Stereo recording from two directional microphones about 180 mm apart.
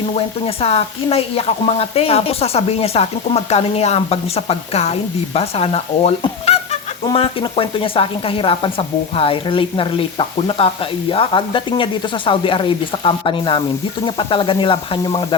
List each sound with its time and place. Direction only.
0.4 s speech: 35° left (ahead or behind)